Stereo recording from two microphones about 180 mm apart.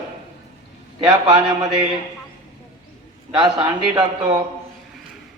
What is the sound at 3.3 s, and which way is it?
A man's voice, 25° right (ahead or behind).